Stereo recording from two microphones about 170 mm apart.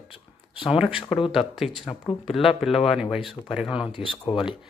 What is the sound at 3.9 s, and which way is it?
Speech, 30° left (ahead or behind).